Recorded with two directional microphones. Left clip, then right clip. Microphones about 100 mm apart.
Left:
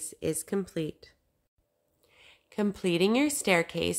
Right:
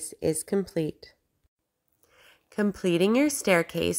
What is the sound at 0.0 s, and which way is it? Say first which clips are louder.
A woman's voice: right 4 dB; 30° right (ahead or behind).